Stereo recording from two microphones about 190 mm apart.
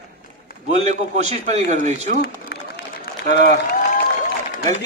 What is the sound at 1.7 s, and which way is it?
Speech, 35° right (ahead or behind).